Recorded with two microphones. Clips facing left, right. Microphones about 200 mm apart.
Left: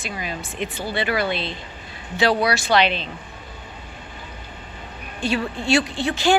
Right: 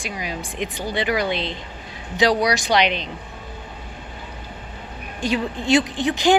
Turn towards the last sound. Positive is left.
turn(degrees=-15)  # may be behind; listen again after turning